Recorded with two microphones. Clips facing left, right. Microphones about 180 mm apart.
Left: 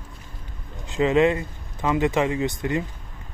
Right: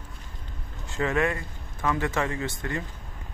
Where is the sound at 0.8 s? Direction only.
20° left (ahead or behind).